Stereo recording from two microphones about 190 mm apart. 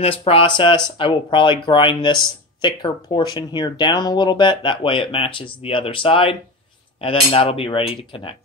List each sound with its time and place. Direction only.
0.0 s speech: 30° left (ahead or behind)